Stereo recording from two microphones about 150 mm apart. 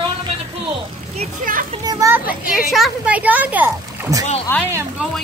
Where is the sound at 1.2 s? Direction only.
60° right (ahead or behind).